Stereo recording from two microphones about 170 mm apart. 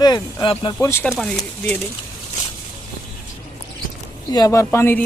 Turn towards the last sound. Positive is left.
turn(degrees=15)  # may be behind; listen again after turning